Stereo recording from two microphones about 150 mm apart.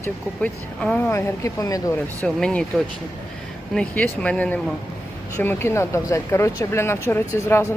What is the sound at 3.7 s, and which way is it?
Speech, 10° left (ahead or behind).